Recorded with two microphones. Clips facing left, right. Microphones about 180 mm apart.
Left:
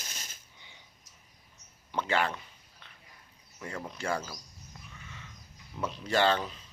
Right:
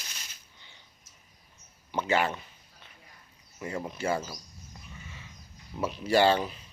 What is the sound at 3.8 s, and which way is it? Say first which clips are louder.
Speech: right 3 dB; 5° right (ahead or behind).